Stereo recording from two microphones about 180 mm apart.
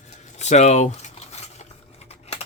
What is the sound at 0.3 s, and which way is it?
Speech, 40° left (ahead or behind).